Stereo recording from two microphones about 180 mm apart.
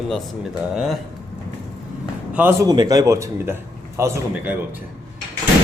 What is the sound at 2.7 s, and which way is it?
A man's voice, 20° right (ahead or behind).